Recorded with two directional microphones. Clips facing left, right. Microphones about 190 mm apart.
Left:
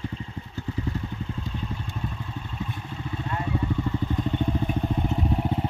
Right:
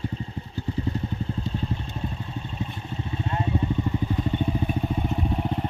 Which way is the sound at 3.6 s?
25° right (ahead or behind).